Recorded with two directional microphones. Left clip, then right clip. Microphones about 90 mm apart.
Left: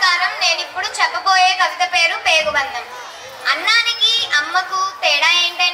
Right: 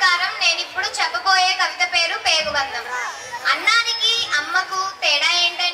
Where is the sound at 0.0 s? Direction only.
35° left (ahead or behind).